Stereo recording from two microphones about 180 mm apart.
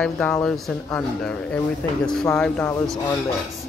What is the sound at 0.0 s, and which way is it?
Speech, 5° left (ahead or behind).